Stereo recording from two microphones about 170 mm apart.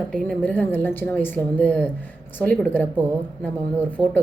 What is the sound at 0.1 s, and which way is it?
Speech, 5° left (ahead or behind).